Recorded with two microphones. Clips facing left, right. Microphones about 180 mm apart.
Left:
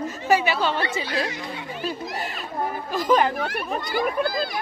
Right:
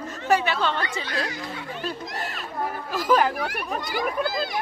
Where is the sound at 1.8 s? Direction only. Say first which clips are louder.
Left 3 dB; centre (ahead or behind).